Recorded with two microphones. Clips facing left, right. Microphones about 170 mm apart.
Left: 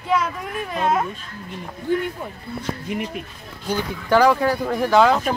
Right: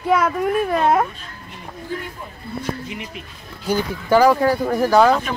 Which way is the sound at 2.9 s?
50° left (ahead or behind).